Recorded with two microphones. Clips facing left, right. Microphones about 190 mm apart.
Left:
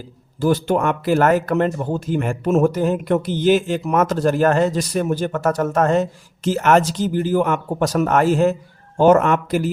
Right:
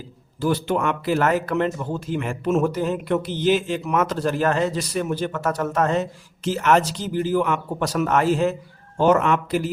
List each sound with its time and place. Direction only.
0.3 s speech: 45° left (ahead or behind)